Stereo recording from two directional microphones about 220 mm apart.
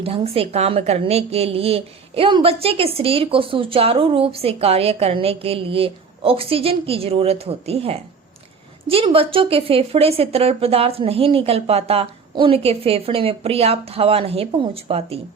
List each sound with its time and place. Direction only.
0.0 s a woman's voice: 25° right (ahead or behind)